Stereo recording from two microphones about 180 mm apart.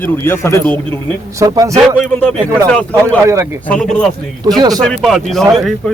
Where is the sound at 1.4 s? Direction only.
20° right (ahead or behind).